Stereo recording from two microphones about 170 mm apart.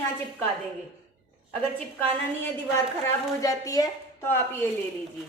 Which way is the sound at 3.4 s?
20° left (ahead or behind).